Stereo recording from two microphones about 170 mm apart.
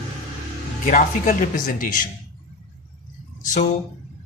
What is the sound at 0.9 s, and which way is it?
Speech, 50° left (ahead or behind).